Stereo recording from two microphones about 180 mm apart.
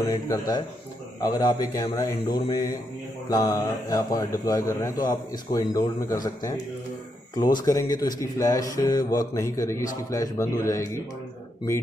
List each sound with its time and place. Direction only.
0.1 s speech: 20° left (ahead or behind)
7.6 s a man's voice: 20° left (ahead or behind)